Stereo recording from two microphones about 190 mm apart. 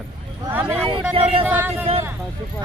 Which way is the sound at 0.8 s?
30° right (ahead or behind).